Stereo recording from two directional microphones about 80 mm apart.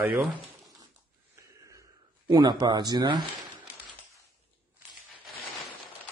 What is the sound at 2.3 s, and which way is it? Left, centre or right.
Speech, right.